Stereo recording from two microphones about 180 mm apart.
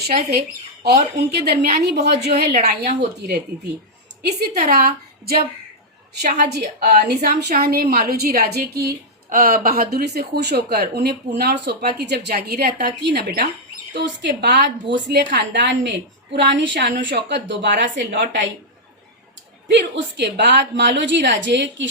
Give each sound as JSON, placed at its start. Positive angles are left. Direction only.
{"t": 0.1, "sound": "speech", "side_deg": -55}
{"t": 6.4, "sound": "a woman's voice", "side_deg": -60}
{"t": 19.7, "sound": "a woman's voice", "side_deg": -75}